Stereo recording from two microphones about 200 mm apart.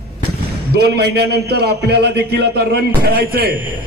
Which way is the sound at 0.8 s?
55° right (ahead or behind).